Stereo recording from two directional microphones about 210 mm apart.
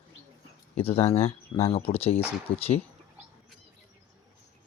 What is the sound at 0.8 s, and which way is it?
Speech, 30° left (ahead or behind).